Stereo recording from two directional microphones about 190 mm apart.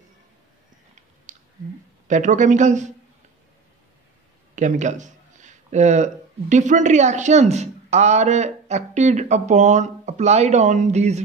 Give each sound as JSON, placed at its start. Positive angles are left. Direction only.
{"t": 1.3, "sound": "a sound", "side_deg": -40}
{"t": 2.0, "sound": "speech", "side_deg": -40}
{"t": 4.6, "sound": "speech", "side_deg": -40}